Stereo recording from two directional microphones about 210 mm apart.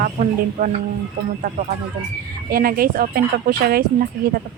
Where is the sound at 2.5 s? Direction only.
45° right (ahead or behind).